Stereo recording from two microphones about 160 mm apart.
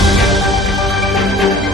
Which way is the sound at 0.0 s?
Centre (ahead or behind).